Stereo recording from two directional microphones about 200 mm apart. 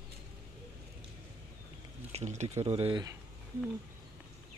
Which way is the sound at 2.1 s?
35° right (ahead or behind).